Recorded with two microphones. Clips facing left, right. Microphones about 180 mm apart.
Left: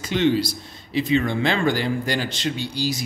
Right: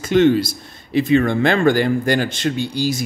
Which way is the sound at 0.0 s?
50° right (ahead or behind).